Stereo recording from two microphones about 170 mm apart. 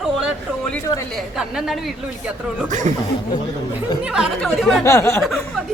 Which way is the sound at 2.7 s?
45° right (ahead or behind).